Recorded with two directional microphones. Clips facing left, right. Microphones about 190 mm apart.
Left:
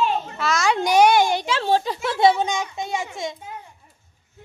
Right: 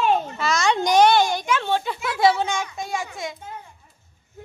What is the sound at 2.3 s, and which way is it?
A child's voice, 20° left (ahead or behind).